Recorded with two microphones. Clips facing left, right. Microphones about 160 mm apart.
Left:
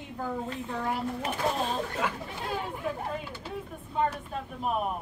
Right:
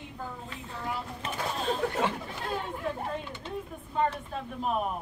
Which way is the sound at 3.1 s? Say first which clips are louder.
Even; 5° left (ahead or behind).